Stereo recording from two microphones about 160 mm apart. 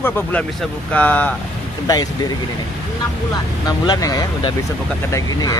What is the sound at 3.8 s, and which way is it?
Speech, 25° left (ahead or behind).